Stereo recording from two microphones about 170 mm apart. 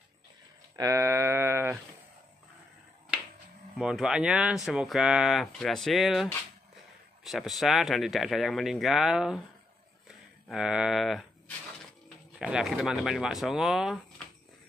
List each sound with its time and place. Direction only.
0.7 s a sound: 20° right (ahead or behind)
3.7 s speech: centre (ahead or behind)
7.2 s speech: centre (ahead or behind)
10.5 s speech: 5° right (ahead or behind)